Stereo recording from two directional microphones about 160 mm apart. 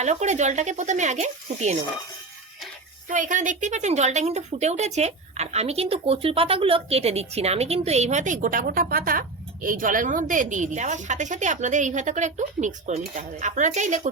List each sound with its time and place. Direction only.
0.0 s a woman's voice: 45° right (ahead or behind)
3.1 s a woman's voice: 50° right (ahead or behind)